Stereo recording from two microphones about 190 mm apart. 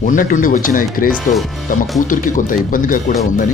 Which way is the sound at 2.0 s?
45° left (ahead or behind).